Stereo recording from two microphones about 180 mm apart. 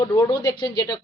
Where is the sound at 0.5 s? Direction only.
25° left (ahead or behind).